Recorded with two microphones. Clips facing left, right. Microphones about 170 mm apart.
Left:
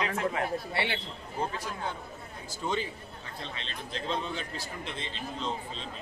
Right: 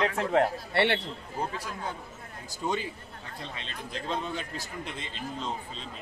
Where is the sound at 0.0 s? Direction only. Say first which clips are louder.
Right 5 dB; 65° right (ahead or behind).